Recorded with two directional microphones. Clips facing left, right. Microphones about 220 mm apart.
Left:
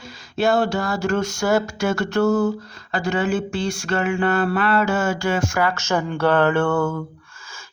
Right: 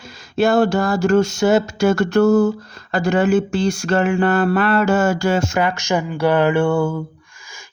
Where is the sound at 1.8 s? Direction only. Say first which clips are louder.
Right 5 dB; 45° right (ahead or behind).